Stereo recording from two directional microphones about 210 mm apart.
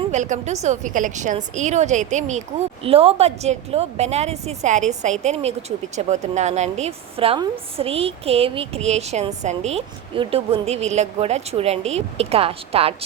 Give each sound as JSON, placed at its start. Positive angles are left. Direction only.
{"t": 0.1, "sound": "speech", "side_deg": -35}